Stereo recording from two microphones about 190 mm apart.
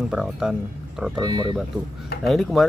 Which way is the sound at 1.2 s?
20° right (ahead or behind).